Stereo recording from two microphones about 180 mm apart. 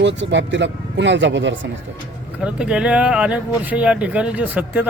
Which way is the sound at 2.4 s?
5° right (ahead or behind).